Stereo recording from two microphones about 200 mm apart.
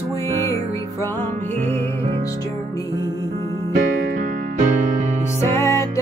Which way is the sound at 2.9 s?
15° right (ahead or behind).